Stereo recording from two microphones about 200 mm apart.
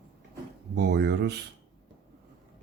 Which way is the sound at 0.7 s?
60° right (ahead or behind).